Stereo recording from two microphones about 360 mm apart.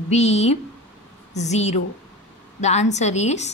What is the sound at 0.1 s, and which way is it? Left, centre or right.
A woman's voice, centre.